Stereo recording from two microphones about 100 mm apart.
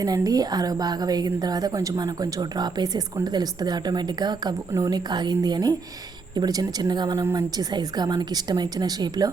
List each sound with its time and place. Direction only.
0.0 s a woman's voice: 40° right (ahead or behind)